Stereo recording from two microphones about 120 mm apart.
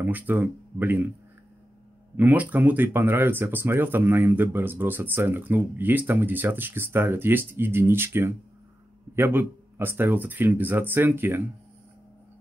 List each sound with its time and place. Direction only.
0.0 s speech: 15° right (ahead or behind)
2.1 s speech: 15° right (ahead or behind)